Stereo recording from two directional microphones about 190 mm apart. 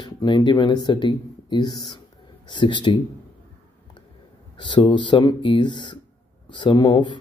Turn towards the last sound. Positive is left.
turn(degrees=25)  # may be behind; listen again after turning